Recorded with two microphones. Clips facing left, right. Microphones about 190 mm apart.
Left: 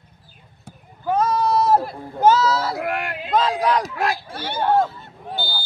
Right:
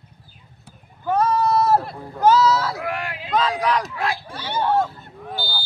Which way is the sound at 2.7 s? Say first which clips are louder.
Left 3 dB; 55° left (ahead or behind).